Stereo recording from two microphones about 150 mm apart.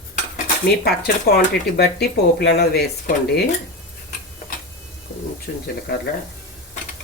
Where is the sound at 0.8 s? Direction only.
90° left.